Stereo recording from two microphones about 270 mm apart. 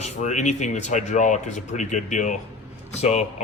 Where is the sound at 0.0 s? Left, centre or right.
Left.